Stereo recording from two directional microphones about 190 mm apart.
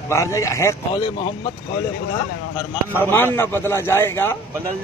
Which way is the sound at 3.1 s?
10° left (ahead or behind).